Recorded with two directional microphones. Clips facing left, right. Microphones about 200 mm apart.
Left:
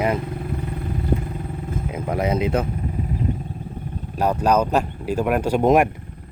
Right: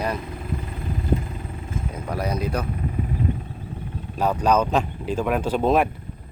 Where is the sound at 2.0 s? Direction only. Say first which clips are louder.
Left 5 dB; 20° left (ahead or behind).